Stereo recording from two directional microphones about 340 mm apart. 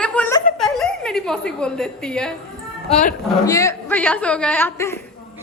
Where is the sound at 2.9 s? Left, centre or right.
Left.